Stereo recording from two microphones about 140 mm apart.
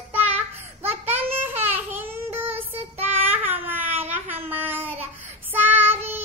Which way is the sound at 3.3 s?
15° right (ahead or behind).